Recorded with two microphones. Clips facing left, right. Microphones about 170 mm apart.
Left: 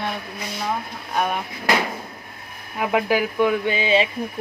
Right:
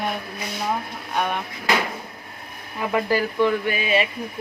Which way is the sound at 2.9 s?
15° left (ahead or behind).